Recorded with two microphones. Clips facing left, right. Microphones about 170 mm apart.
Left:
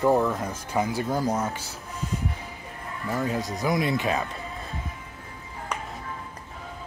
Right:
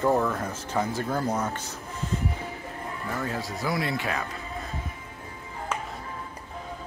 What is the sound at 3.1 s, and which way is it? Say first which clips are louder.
Speech: left 5 dB; 20° left (ahead or behind).